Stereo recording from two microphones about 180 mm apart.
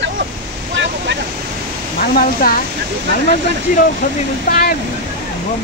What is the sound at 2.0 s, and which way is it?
Speech, 55° left (ahead or behind).